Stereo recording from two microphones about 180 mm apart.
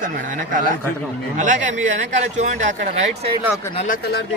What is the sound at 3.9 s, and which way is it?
Speech, 65° left (ahead or behind).